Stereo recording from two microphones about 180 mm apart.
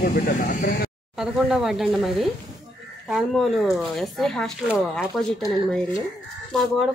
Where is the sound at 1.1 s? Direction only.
Centre (ahead or behind).